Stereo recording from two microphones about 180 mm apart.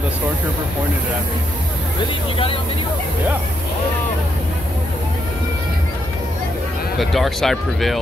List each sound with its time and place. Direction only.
2.3 s speech: 30° left (ahead or behind)
7.0 s speech: centre (ahead or behind)